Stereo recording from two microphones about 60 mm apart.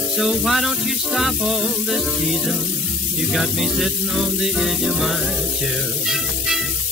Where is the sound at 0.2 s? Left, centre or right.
Centre.